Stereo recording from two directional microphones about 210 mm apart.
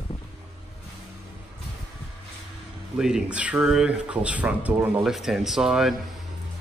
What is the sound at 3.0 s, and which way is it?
Speech, 5° right (ahead or behind).